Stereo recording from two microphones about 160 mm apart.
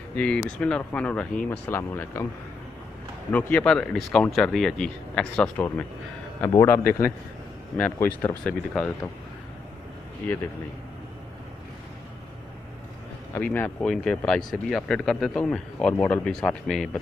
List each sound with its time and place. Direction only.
0.1 s speech: 5° left (ahead or behind)
3.3 s speech: 10° left (ahead or behind)
13.3 s speech: 10° left (ahead or behind)